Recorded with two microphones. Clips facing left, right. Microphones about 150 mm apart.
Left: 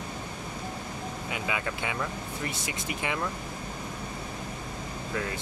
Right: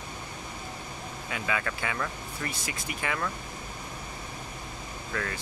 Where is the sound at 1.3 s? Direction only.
15° left (ahead or behind).